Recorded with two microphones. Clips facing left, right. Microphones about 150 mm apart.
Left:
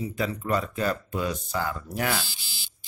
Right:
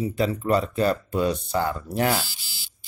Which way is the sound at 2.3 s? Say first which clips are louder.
Left 1 dB; 20° left (ahead or behind).